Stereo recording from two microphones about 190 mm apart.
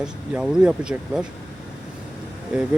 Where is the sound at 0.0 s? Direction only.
5° right (ahead or behind).